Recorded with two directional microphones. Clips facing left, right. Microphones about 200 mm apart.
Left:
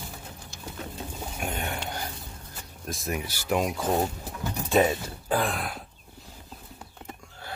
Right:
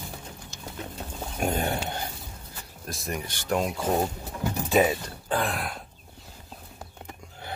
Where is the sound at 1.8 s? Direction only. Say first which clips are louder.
Right 1 dB; 25° right (ahead or behind).